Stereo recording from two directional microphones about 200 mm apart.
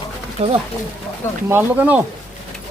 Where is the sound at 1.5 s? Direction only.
10° right (ahead or behind).